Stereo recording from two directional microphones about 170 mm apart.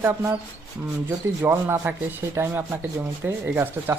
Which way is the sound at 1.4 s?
15° right (ahead or behind).